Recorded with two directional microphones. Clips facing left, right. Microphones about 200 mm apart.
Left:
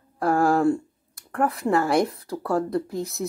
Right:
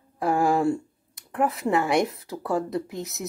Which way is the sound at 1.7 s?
20° right (ahead or behind).